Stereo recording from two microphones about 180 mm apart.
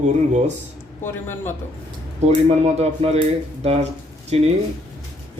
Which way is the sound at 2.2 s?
35° right (ahead or behind).